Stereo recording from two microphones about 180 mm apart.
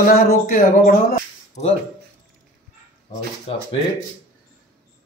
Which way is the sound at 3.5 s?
30° left (ahead or behind).